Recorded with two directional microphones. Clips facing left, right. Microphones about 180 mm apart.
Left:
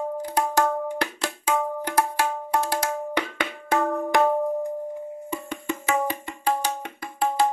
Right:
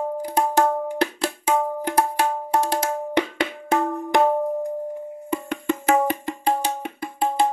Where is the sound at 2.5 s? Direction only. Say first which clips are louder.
Right 2 dB; 35° right (ahead or behind).